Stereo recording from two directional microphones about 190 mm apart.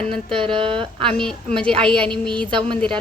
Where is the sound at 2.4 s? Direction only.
25° right (ahead or behind).